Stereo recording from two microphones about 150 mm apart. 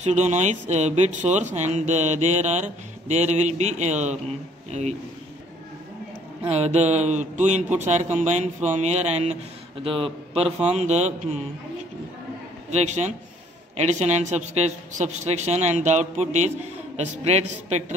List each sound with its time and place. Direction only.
0.0 s speech: 50° right (ahead or behind)
6.5 s a man's voice: 45° right (ahead or behind)
12.7 s speech: 50° right (ahead or behind)